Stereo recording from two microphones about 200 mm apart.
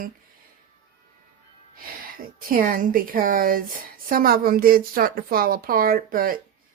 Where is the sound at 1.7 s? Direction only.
45° right (ahead or behind).